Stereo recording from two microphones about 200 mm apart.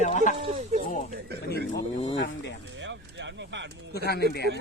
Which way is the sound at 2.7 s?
65° right (ahead or behind).